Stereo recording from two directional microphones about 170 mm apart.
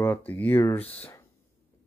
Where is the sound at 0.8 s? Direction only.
35° left (ahead or behind).